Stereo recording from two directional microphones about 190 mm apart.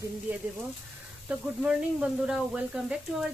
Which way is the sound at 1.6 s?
5° right (ahead or behind).